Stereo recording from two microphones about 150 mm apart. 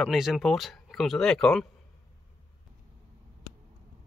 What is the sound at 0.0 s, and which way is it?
Speech, 5° right (ahead or behind).